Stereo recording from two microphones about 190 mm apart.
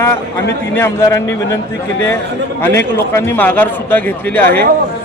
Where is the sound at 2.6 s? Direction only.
15° left (ahead or behind).